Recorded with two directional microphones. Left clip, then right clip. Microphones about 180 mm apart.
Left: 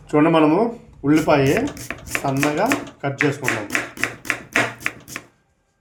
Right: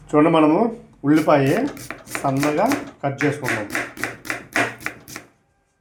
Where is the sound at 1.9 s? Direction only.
20° left (ahead or behind).